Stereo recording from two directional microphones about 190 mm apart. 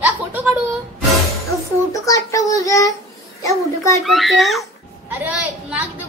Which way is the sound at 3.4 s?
15° left (ahead or behind).